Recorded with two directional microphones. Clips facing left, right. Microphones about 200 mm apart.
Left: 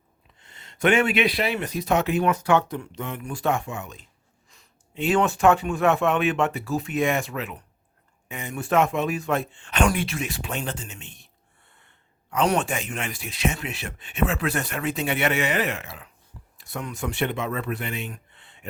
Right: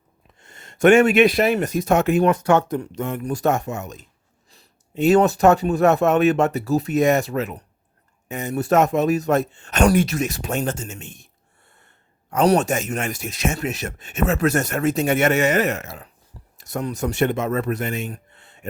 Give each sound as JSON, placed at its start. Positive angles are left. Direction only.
{"t": 0.3, "sound": "a man's voice", "side_deg": -45}